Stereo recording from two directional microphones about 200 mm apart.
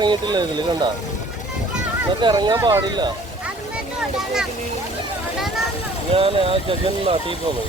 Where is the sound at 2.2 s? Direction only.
20° right (ahead or behind).